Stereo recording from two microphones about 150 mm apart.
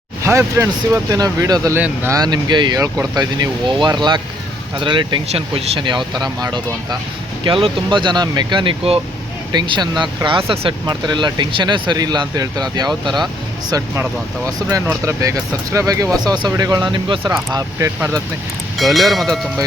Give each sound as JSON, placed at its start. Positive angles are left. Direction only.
{"t": 0.3, "sound": "speech", "side_deg": -15}
{"t": 18.8, "sound": "speech", "side_deg": 0}